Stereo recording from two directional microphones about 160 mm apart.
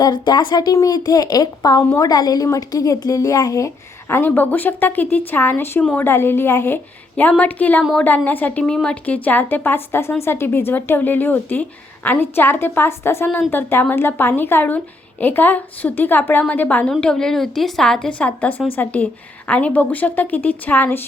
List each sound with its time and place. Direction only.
0.0 s speech: 30° left (ahead or behind)
4.1 s a woman's voice: 10° left (ahead or behind)